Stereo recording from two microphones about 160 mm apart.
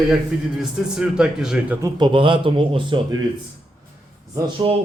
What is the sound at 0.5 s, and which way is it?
A man's voice, 5° right (ahead or behind).